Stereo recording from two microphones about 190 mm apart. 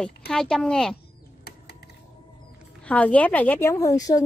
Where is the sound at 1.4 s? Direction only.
55° left (ahead or behind).